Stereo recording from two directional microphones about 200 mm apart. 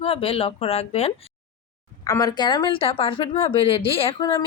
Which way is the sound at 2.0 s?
15° left (ahead or behind).